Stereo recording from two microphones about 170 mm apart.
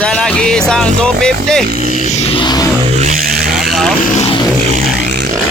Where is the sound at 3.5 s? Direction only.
Centre (ahead or behind).